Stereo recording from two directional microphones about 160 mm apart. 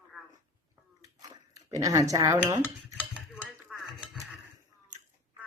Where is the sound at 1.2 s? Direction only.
20° right (ahead or behind).